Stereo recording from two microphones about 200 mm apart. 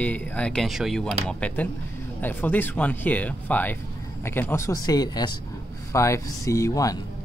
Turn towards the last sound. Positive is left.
turn(degrees=15)  # may be behind; listen again after turning